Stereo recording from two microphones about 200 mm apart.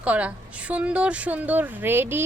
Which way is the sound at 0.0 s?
5° right (ahead or behind).